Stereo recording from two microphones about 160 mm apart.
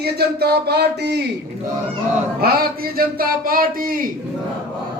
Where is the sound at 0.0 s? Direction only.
80° right.